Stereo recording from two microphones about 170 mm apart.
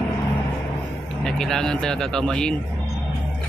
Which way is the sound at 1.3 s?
5° left (ahead or behind).